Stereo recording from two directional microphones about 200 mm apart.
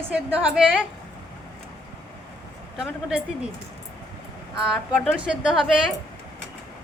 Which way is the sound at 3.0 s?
5° right (ahead or behind).